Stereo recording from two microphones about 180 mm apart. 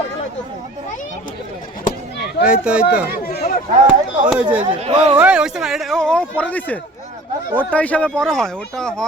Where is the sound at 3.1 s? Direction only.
55° left (ahead or behind).